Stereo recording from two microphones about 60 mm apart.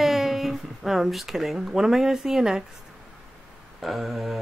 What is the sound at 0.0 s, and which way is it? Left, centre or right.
Speech, centre.